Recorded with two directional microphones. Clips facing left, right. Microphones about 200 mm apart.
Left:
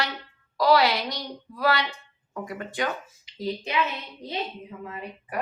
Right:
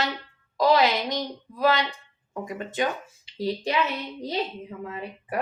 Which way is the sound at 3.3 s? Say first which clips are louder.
Right 2 dB; 35° right (ahead or behind).